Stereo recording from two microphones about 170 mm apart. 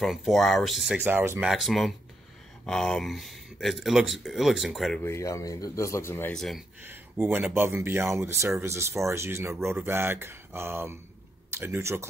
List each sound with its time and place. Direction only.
0.0 s speech: centre (ahead or behind)
1.0 s speech: 15° right (ahead or behind)
1.5 s speech: centre (ahead or behind)
5.0 s speech: 15° left (ahead or behind)
6.3 s speech: centre (ahead or behind)
6.8 s speech: 10° right (ahead or behind)